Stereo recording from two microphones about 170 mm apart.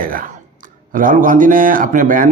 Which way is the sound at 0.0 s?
55° right (ahead or behind).